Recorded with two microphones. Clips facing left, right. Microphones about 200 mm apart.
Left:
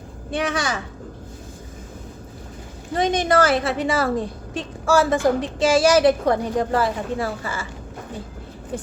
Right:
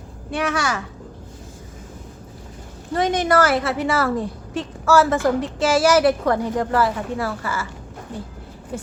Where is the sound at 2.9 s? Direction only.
15° left (ahead or behind).